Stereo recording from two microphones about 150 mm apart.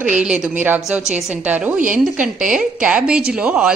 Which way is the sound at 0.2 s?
5° right (ahead or behind).